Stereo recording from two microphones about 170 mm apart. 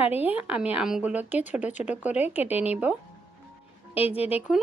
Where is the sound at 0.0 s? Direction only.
10° right (ahead or behind).